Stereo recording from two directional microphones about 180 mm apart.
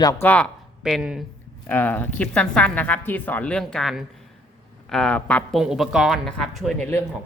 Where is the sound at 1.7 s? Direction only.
10° left (ahead or behind).